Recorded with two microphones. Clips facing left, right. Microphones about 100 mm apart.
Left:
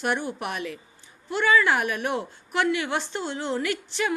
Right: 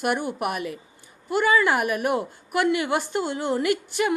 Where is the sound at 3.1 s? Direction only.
50° right (ahead or behind).